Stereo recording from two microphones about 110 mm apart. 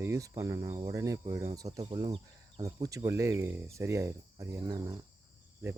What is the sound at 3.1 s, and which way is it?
Speech, 25° right (ahead or behind).